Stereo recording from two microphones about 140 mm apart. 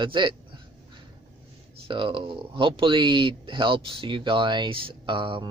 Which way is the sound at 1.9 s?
35° right (ahead or behind).